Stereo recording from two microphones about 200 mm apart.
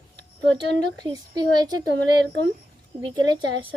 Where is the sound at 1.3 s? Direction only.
20° right (ahead or behind).